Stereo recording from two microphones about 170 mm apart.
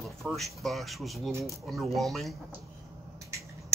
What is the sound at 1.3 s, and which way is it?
Speech, 15° right (ahead or behind).